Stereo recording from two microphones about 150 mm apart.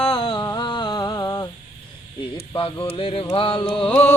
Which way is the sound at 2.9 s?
40° left (ahead or behind).